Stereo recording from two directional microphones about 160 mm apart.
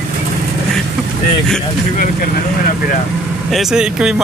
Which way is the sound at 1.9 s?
60° left (ahead or behind).